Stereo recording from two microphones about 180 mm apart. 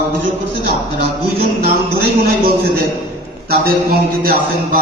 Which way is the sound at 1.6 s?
60° right (ahead or behind).